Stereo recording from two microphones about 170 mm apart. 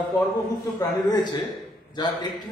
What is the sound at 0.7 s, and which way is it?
A man's voice, 25° left (ahead or behind).